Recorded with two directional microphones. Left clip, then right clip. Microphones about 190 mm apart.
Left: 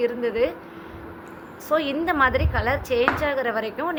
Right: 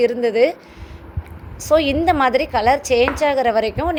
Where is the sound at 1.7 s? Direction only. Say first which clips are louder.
Right 7 dB; 25° right (ahead or behind).